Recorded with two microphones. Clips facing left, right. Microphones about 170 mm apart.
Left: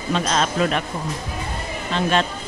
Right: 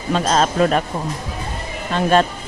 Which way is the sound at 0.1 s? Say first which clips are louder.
Right 4 dB; 40° right (ahead or behind).